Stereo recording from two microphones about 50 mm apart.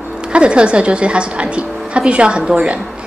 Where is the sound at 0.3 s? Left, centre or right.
Right.